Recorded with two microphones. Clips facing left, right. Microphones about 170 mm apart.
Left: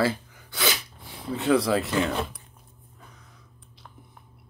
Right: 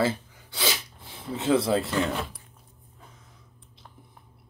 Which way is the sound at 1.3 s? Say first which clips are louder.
Left 1 dB; 25° right (ahead or behind).